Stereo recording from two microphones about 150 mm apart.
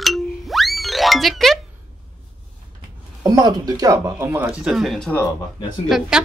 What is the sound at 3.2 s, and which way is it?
Speech, 25° right (ahead or behind).